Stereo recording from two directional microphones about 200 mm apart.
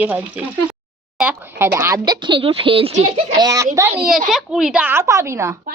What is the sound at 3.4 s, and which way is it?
Speech, 15° right (ahead or behind).